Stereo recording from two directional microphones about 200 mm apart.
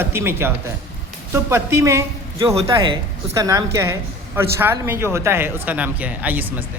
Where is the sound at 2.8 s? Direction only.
25° right (ahead or behind).